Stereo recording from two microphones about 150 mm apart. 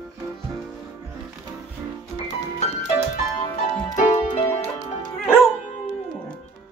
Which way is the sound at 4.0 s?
55° left (ahead or behind).